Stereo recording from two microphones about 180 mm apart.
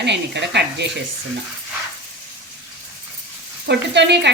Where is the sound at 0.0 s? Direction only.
70° right (ahead or behind).